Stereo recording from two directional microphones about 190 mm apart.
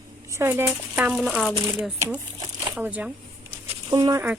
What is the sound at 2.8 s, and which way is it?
Speech, 5° right (ahead or behind).